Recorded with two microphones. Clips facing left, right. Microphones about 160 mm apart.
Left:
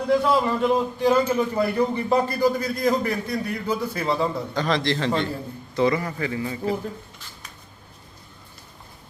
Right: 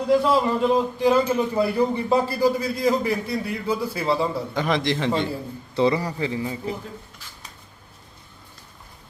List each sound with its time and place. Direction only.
0.1 s a man's voice: 5° right (ahead or behind)
4.5 s a man's voice: 15° right (ahead or behind)
5.7 s a man's voice: 25° right (ahead or behind)